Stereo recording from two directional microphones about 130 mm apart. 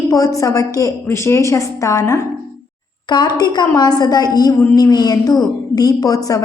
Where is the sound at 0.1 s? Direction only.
25° left (ahead or behind).